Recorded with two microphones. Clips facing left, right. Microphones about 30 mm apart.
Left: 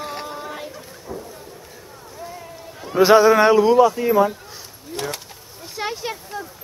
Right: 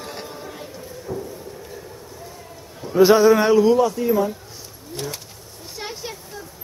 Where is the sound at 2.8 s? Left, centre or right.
Centre.